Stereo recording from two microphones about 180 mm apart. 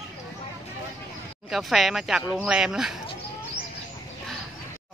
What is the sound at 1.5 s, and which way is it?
Speech, centre (ahead or behind).